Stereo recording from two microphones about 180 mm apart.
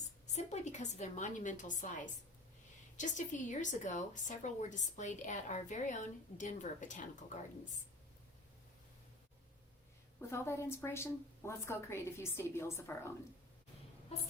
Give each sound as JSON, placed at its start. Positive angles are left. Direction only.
{"t": 0.3, "sound": "a woman's voice", "side_deg": 40}
{"t": 3.0, "sound": "a woman's voice", "side_deg": 45}
{"t": 10.2, "sound": "a woman's voice", "side_deg": 15}